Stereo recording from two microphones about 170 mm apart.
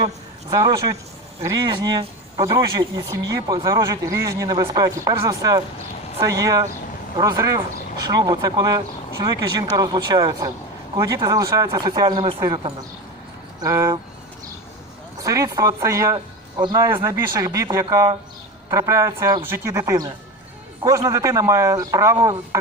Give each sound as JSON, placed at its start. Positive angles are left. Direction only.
{"t": 0.5, "sound": "speech", "side_deg": -20}
{"t": 13.6, "sound": "speech", "side_deg": -20}
{"t": 15.2, "sound": "a woman's voice", "side_deg": -20}